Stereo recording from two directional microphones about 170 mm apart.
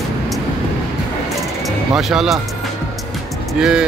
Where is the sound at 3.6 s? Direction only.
5° right (ahead or behind).